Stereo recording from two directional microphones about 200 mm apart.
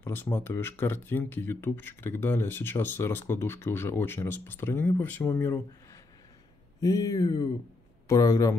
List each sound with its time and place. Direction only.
0.0 s speech: 10° left (ahead or behind)